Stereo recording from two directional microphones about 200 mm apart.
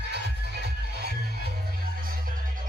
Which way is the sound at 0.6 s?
55° right (ahead or behind).